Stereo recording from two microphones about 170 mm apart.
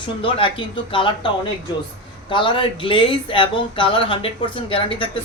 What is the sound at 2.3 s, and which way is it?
A man's voice, 30° left (ahead or behind).